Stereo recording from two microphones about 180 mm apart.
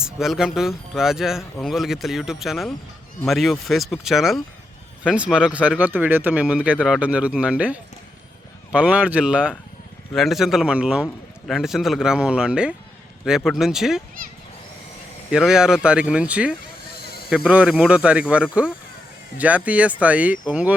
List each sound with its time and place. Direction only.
0.0 s speech: 5° right (ahead or behind)
15.3 s speech: 5° right (ahead or behind)
16.9 s a sound: 60° left (ahead or behind)
17.2 s speech: 5° right (ahead or behind)